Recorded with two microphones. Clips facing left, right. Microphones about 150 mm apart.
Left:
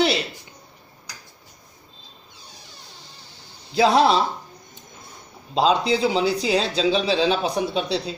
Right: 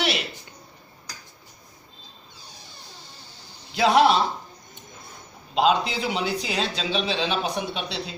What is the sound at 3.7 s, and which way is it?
Speech, 35° left (ahead or behind).